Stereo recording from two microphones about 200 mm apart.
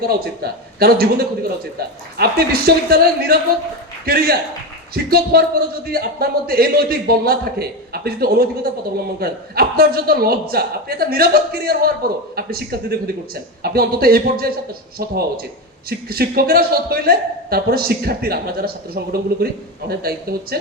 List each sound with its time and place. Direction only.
0.0 s a woman's voice: 50° right (ahead or behind)